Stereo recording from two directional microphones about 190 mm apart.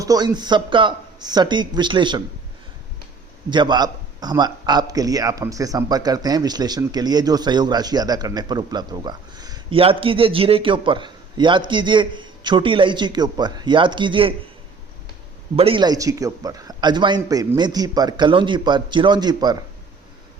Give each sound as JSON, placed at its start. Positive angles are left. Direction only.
{"t": 0.0, "sound": "a man's voice", "side_deg": -20}
{"t": 3.5, "sound": "a man's voice", "side_deg": -25}
{"t": 15.5, "sound": "a man's voice", "side_deg": -30}